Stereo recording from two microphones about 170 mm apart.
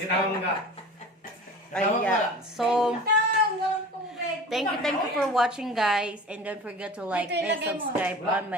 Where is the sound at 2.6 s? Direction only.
5° right (ahead or behind).